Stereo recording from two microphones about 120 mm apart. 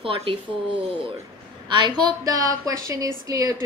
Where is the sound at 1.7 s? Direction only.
35° right (ahead or behind).